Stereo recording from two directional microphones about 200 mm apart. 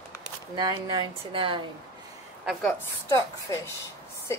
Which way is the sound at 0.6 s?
20° right (ahead or behind).